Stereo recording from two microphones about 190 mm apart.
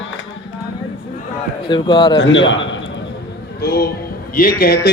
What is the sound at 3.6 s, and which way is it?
A man's voice, 55° left (ahead or behind).